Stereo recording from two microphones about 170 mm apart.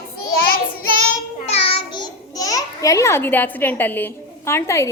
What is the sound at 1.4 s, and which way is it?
A child's voice, 35° left (ahead or behind).